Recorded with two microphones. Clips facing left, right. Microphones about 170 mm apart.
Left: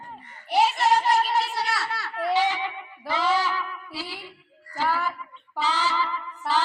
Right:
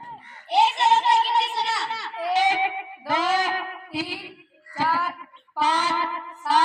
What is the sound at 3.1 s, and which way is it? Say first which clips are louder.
Music: right 1 dB; 90° right.